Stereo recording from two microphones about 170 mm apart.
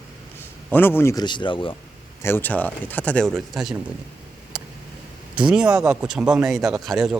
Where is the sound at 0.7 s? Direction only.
10° left (ahead or behind); by 1.7 s 30° left (ahead or behind).